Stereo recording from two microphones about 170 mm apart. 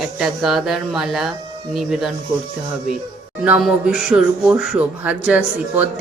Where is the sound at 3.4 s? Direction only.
5° right (ahead or behind).